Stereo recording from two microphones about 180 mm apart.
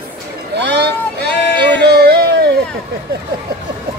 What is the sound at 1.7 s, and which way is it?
Music, 65° right (ahead or behind).